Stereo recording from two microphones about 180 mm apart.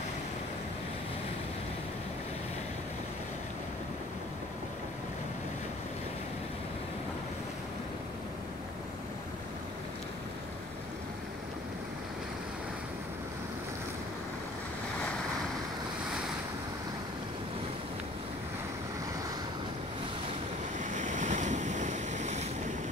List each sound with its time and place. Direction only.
20.8 s waves: 45° right (ahead or behind)